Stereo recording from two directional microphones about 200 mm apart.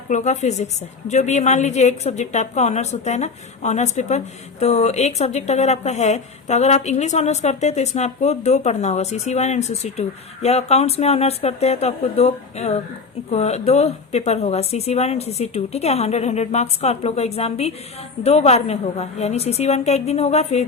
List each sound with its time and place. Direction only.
0.1 s speech: 35° left (ahead or behind)